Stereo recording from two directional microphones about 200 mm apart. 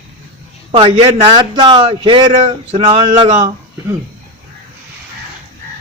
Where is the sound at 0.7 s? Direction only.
30° right (ahead or behind).